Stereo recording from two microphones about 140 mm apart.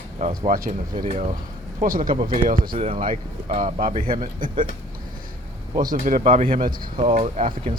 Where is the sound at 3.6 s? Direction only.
70° right (ahead or behind).